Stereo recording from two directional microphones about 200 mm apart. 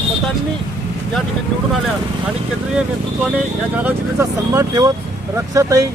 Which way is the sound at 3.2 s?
10° right (ahead or behind).